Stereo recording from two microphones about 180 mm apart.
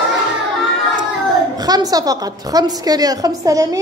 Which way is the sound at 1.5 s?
20° right (ahead or behind).